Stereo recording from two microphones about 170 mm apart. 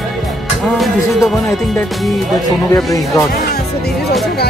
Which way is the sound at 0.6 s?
Centre (ahead or behind).